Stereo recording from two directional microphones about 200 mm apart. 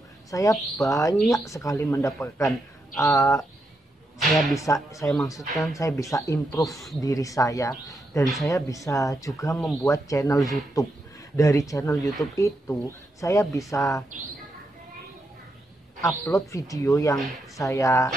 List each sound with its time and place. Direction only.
0.3 s speech: 15° left (ahead or behind)
4.2 s speech: centre (ahead or behind)
4.6 s speech: 15° left (ahead or behind)
5.5 s speech: centre (ahead or behind)
5.8 s speech: 15° left (ahead or behind)
8.2 s speech: centre (ahead or behind)
8.5 s speech: 15° left (ahead or behind)
16.0 s speech: 15° left (ahead or behind)